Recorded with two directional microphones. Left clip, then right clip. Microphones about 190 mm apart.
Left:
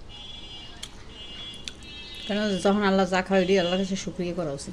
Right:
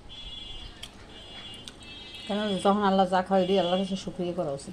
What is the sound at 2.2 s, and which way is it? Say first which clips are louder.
A woman's voice: left 1 dB; 20° left (ahead or behind).